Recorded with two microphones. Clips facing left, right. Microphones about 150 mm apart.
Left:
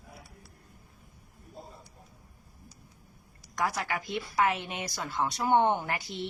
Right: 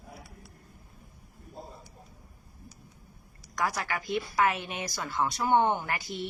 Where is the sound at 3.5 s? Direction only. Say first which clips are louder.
Even; 25° left (ahead or behind).